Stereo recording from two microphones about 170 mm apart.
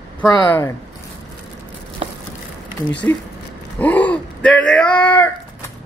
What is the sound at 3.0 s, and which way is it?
Speech, 15° left (ahead or behind).